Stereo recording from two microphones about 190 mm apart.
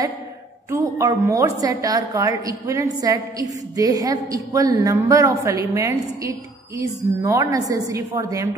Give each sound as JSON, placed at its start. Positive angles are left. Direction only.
{"t": 0.7, "sound": "a woman's voice", "side_deg": -15}